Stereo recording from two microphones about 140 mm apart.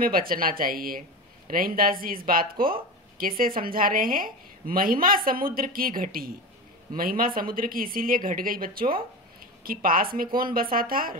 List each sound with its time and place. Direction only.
0.0 s speech: 90° right